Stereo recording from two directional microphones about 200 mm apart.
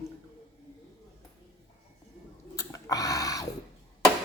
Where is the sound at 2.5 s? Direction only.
15° left (ahead or behind).